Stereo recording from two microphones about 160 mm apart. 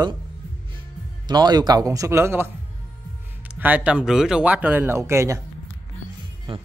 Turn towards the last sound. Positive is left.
turn(degrees=-15)  # may be behind; listen again after turning